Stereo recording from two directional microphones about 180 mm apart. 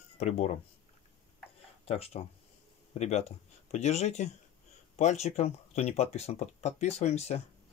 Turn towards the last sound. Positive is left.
turn(degrees=35)  # may be behind; listen again after turning